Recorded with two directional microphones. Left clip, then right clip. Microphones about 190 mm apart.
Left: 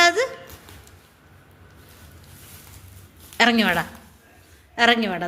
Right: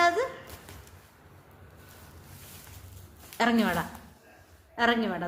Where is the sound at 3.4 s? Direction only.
15° left (ahead or behind).